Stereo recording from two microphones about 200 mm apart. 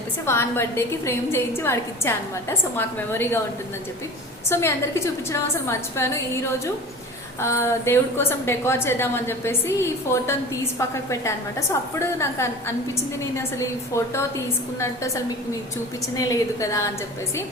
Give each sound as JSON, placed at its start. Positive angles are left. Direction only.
{"t": 0.3, "sound": "a woman's voice", "side_deg": 10}
{"t": 4.4, "sound": "a woman's voice", "side_deg": 15}